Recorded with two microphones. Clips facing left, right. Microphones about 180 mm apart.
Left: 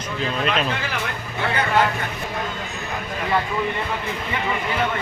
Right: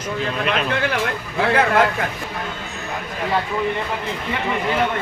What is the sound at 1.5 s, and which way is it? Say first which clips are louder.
Speech: right 3 dB; 90° right.